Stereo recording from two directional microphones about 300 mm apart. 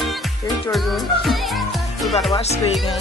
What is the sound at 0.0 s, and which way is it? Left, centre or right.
Music, centre.